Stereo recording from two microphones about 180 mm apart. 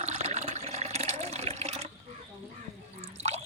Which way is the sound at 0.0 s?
40° right (ahead or behind).